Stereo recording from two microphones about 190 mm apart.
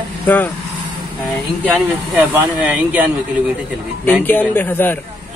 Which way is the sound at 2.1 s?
10° right (ahead or behind).